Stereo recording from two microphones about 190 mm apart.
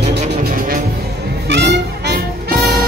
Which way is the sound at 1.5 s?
60° right (ahead or behind).